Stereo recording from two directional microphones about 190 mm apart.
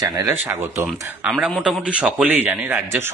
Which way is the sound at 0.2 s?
15° right (ahead or behind).